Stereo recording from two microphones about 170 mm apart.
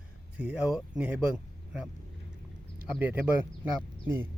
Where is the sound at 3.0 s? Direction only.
10° right (ahead or behind).